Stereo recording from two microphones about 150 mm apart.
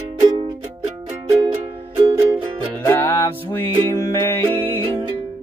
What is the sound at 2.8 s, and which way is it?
Music, 15° left (ahead or behind).